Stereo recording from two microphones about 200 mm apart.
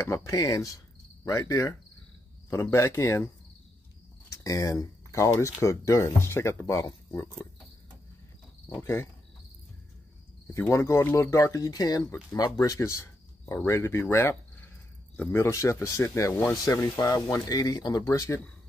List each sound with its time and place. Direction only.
0.1 s speech: 15° left (ahead or behind)
4.3 s speech: 15° left (ahead or behind)
8.6 s speech: 10° left (ahead or behind)
10.5 s speech: 15° left (ahead or behind)